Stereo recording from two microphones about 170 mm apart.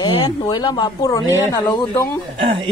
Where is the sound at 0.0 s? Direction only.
25° left (ahead or behind).